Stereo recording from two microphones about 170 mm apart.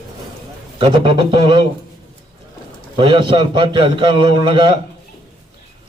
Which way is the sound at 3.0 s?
30° right (ahead or behind).